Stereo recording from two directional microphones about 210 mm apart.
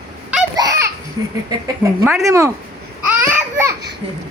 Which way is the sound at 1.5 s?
15° right (ahead or behind).